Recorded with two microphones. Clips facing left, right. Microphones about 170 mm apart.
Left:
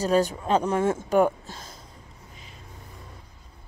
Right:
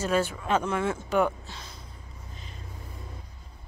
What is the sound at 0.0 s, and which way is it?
Speech, 40° left (ahead or behind).